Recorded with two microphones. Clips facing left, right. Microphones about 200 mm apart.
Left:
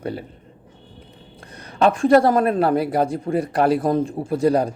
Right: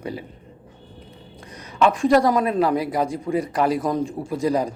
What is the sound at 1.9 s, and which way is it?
Speech, 55° left (ahead or behind).